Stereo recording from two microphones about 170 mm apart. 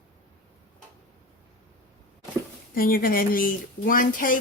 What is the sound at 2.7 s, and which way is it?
Speech, 60° left (ahead or behind).